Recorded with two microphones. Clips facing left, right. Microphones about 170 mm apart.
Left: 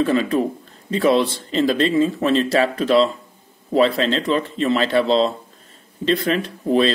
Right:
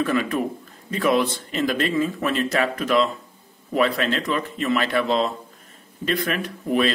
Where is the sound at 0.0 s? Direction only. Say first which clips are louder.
Left 4 dB; 30° left (ahead or behind).